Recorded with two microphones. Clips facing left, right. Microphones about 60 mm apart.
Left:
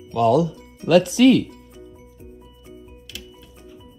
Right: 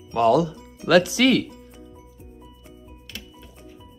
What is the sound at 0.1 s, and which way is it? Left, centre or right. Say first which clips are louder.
Speech: left 1 dB; right.